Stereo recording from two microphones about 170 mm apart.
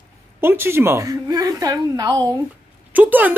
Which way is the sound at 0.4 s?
15° right (ahead or behind).